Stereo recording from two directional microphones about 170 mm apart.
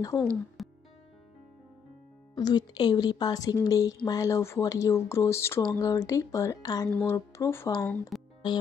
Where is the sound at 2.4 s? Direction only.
25° left (ahead or behind).